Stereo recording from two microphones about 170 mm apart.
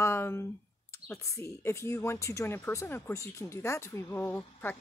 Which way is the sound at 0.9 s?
15° left (ahead or behind).